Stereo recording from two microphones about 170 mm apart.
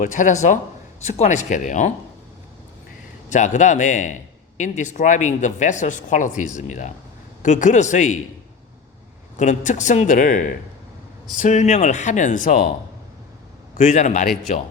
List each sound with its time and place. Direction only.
0.0 s a man's voice: 50° left (ahead or behind)
3.2 s a man's voice: 45° left (ahead or behind)
9.4 s a man's voice: 45° left (ahead or behind)
13.7 s a man's voice: 45° left (ahead or behind)